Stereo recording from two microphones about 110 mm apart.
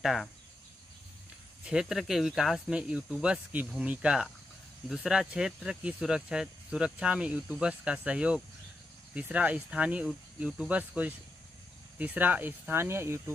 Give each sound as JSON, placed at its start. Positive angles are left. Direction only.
{"t": 0.0, "sound": "speech", "side_deg": 0}
{"t": 1.6, "sound": "speech", "side_deg": -5}